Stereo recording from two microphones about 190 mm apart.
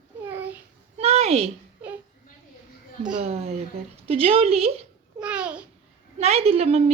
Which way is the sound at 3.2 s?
35° right (ahead or behind).